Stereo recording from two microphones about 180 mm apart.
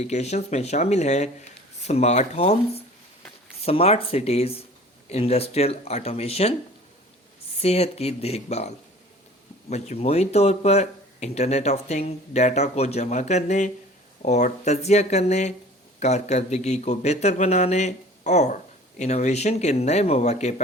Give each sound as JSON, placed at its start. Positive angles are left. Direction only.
{"t": 0.1, "sound": "speech", "side_deg": 40}
{"t": 7.6, "sound": "speech", "side_deg": 35}